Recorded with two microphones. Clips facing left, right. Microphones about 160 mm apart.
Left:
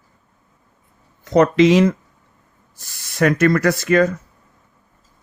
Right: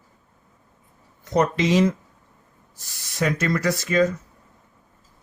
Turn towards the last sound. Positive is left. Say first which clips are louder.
# left 4 dB
turn(degrees=65)  # may be behind; listen again after turning